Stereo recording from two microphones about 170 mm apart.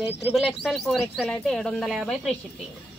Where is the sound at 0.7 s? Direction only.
Centre (ahead or behind).